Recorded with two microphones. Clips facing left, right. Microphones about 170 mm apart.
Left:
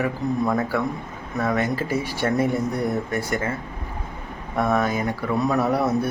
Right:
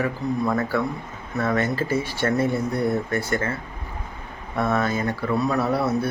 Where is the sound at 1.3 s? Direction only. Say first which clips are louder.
Even; 10° left (ahead or behind).